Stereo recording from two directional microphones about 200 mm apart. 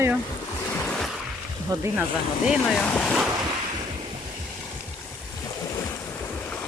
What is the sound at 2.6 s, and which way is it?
Boat, 5° left (ahead or behind).